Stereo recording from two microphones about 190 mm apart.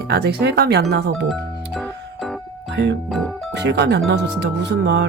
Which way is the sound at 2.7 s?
65° right (ahead or behind).